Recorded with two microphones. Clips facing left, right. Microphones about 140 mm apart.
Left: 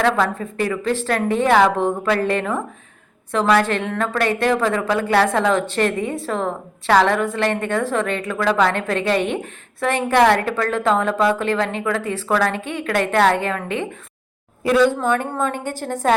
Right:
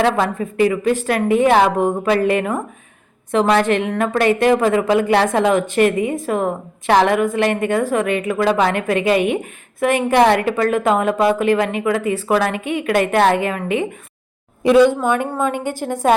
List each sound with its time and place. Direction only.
0.0 s a woman's voice: 15° right (ahead or behind)